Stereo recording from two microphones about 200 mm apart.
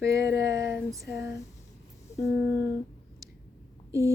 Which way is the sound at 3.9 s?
15° right (ahead or behind).